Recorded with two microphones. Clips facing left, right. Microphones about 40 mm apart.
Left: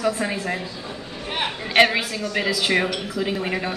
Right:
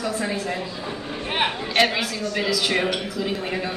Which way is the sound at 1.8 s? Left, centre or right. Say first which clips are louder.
Left 4 dB; left.